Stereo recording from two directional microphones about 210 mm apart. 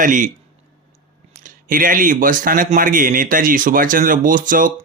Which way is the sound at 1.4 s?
40° right (ahead or behind).